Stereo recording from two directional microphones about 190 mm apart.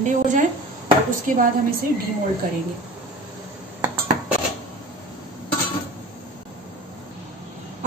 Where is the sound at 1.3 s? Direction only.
45° right (ahead or behind).